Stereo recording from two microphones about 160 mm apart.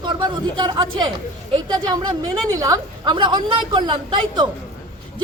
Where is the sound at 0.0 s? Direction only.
25° right (ahead or behind).